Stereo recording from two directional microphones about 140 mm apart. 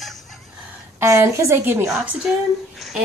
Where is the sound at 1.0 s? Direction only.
20° right (ahead or behind).